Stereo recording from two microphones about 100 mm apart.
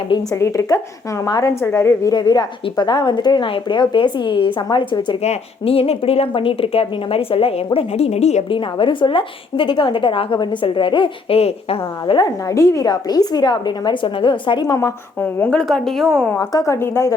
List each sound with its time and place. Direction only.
0.3 s a woman's voice: 30° left (ahead or behind)
2.0 s a woman's voice: 40° left (ahead or behind)
3.4 s a woman's voice: 55° left (ahead or behind)
5.2 s a woman's voice: 80° left
12.1 s a woman's voice: 40° left (ahead or behind)
12.9 s a woman's voice: 45° left (ahead or behind)
14.7 s a woman's voice: 35° left (ahead or behind)
15.2 s a woman's voice: 10° left (ahead or behind)
16.4 s speech: 35° left (ahead or behind)